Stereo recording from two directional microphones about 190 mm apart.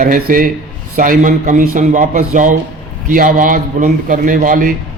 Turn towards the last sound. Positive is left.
turn(degrees=-45)  # may be behind; listen again after turning